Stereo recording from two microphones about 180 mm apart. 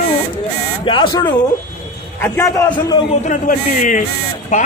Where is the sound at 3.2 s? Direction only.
45° left (ahead or behind).